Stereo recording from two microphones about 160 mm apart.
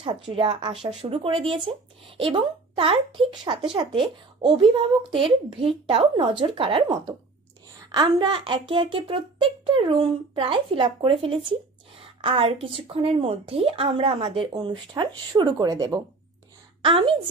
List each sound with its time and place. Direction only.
0.0 s a woman's voice: 35° right (ahead or behind)